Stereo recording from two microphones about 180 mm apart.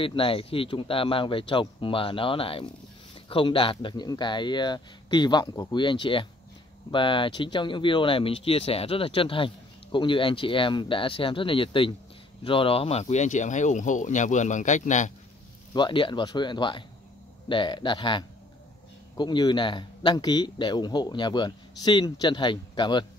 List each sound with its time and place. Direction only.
0.0 s speech: 30° left (ahead or behind)
15.7 s speech: 25° left (ahead or behind)